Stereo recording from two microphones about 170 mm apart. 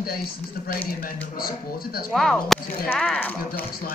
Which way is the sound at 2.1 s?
Centre (ahead or behind).